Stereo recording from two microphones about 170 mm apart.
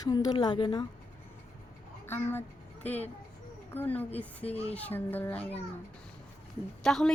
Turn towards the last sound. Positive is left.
turn(degrees=5)  # may be behind; listen again after turning